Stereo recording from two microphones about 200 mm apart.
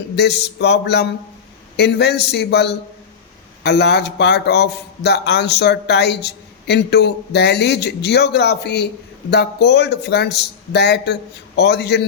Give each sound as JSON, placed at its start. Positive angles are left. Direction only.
{"t": 0.2, "sound": "a man's voice", "side_deg": 55}